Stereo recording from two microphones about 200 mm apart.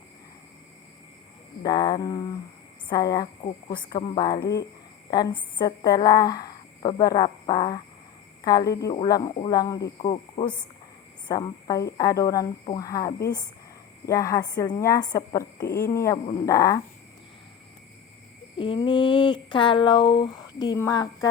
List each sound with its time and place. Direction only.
1.6 s a woman's voice: 20° left (ahead or behind)
10.0 s speech: 30° left (ahead or behind)
11.3 s a woman's voice: 20° left (ahead or behind)
18.5 s speech: 25° left (ahead or behind)